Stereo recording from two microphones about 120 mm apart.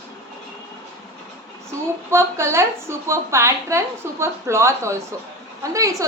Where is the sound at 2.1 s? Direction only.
20° right (ahead or behind).